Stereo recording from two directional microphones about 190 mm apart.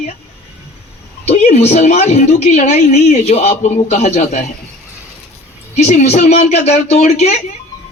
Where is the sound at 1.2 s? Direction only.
35° left (ahead or behind).